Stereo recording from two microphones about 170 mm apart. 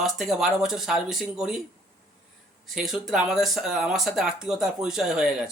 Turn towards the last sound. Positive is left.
turn(degrees=-5)  # may be behind; listen again after turning